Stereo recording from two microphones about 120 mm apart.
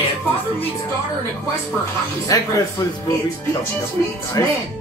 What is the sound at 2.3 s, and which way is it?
Speech, 30° left (ahead or behind).